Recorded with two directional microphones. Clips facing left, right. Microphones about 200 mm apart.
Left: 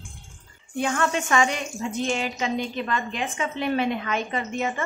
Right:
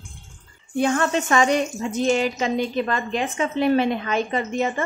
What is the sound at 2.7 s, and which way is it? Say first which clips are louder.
A woman's voice: right 4 dB; 35° right (ahead or behind).